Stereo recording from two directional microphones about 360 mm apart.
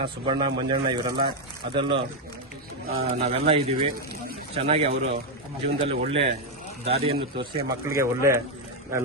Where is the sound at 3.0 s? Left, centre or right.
Centre.